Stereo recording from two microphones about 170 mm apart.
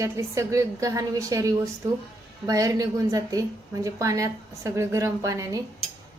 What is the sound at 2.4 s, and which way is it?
Cutlery, 20° right (ahead or behind).